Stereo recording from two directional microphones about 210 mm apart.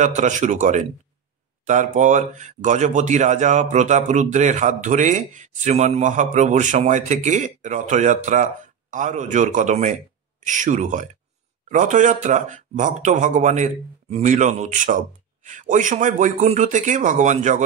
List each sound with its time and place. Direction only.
0.0 s speech: 35° right (ahead or behind)